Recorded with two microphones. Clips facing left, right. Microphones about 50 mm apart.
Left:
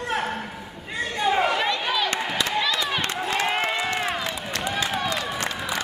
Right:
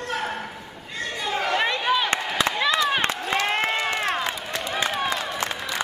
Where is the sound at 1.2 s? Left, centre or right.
Centre.